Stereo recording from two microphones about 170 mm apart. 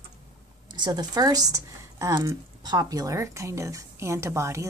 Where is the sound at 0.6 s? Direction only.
25° right (ahead or behind).